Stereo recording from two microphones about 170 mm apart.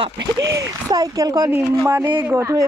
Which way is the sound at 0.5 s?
20° right (ahead or behind).